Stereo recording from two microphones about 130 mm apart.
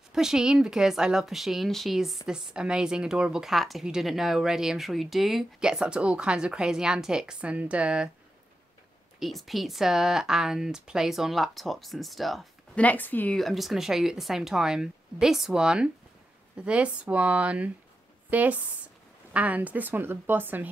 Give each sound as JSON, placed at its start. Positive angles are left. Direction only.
{"t": 0.1, "sound": "a woman's voice", "side_deg": -5}
{"t": 9.2, "sound": "a woman's voice", "side_deg": 0}
{"t": 12.8, "sound": "speech", "side_deg": 15}
{"t": 13.4, "sound": "a woman's voice", "side_deg": 0}